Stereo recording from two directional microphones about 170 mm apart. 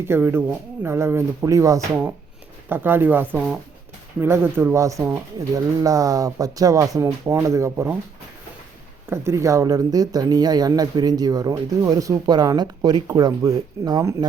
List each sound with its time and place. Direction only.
0.0 s speech: 15° right (ahead or behind)
9.0 s speech: 15° right (ahead or behind)